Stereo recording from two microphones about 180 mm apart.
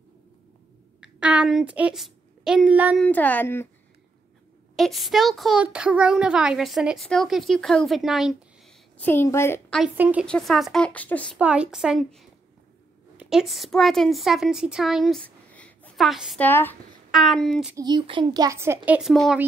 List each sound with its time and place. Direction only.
1.0 s a woman's voice: 5° right (ahead or behind)
3.0 s speech: 10° left (ahead or behind)
4.7 s speech: centre (ahead or behind)
9.9 s a child's voice: 5° right (ahead or behind)
10.2 s speech: 5° left (ahead or behind)
11.3 s speech: 5° right (ahead or behind)
16.3 s speech: 10° left (ahead or behind)
17.1 s speech: centre (ahead or behind)
17.7 s a child's voice: 25° right (ahead or behind); by 19.4 s centre (ahead or behind)